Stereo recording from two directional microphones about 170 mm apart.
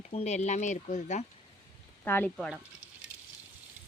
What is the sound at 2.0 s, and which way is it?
Speech, 10° left (ahead or behind).